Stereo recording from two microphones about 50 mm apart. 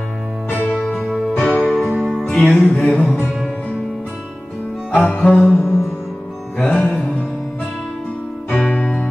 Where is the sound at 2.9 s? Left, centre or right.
Centre.